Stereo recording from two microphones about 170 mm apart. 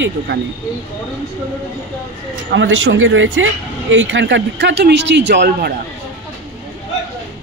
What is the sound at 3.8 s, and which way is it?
Speech, 90° right.